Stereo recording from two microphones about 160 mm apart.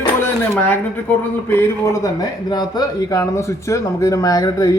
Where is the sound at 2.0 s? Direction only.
25° left (ahead or behind).